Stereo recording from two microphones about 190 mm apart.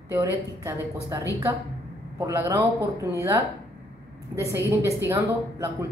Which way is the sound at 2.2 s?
15° right (ahead or behind).